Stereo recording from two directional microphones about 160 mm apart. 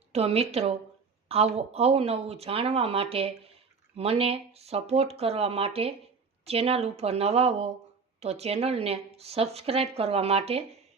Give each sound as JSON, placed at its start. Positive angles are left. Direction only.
{"t": 0.1, "sound": "a woman's voice", "side_deg": -40}